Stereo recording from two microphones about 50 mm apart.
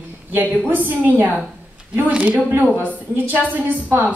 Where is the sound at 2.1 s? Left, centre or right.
Right.